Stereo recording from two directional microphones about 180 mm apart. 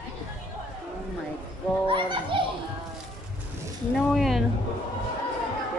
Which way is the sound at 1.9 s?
30° right (ahead or behind).